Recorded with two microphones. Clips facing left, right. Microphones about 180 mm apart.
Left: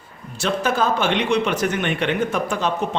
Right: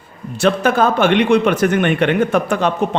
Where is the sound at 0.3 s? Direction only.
60° right (ahead or behind).